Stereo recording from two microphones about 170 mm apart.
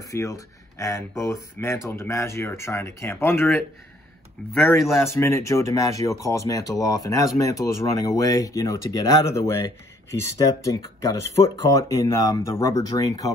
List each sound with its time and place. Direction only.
0.1 s speech: 15° left (ahead or behind)
4.6 s a man's voice: centre (ahead or behind)
5.0 s speech: 15° left (ahead or behind)